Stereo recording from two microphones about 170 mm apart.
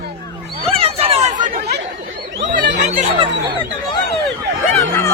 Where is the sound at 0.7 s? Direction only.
35° right (ahead or behind).